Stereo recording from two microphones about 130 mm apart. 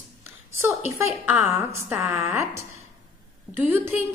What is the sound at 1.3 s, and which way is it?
A woman's voice, 15° right (ahead or behind).